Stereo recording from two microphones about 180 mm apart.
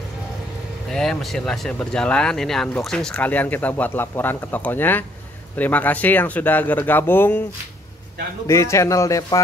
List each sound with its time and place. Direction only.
0.8 s speech: centre (ahead or behind)
8.5 s speech: 15° left (ahead or behind)